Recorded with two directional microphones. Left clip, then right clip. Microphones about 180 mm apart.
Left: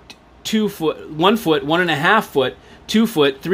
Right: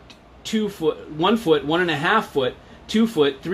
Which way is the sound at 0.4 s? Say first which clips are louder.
Left 4 dB; 60° left (ahead or behind).